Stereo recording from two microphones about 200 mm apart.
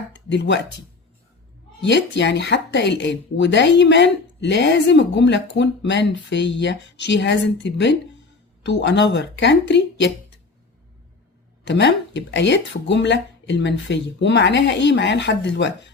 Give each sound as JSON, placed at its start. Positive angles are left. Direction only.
{"t": 0.1, "sound": "a sound", "side_deg": 60}
{"t": 1.8, "sound": "a woman's voice", "side_deg": 65}
{"t": 11.6, "sound": "a woman's voice", "side_deg": 60}